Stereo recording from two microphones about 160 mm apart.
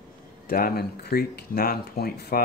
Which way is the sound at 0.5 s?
65° left (ahead or behind).